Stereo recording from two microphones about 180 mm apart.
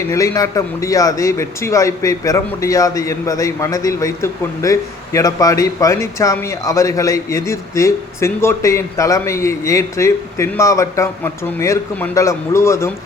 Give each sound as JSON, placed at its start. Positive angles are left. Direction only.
{"t": 0.1, "sound": "a man's voice", "side_deg": 15}